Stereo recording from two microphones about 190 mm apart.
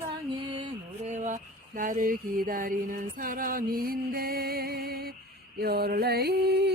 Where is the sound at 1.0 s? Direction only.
40° right (ahead or behind).